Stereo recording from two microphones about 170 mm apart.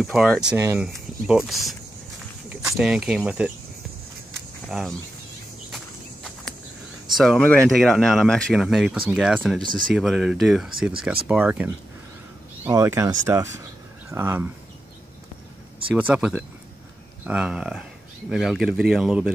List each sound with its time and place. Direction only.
0.0 s speech: centre (ahead or behind)
0.6 s speech: 15° right (ahead or behind)
0.8 s speech: 5° right (ahead or behind)
4.6 s speech: centre (ahead or behind)
7.2 s speech: 5° left (ahead or behind)
15.9 s speech: 5° right (ahead or behind)